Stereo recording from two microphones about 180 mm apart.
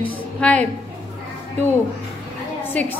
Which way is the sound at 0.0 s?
5° left (ahead or behind).